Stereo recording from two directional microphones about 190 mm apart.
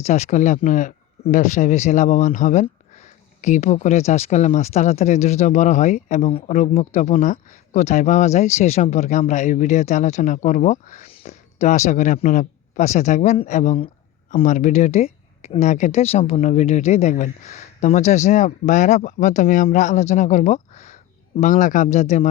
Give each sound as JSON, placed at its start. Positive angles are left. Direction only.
{"t": 0.0, "sound": "speech", "side_deg": 35}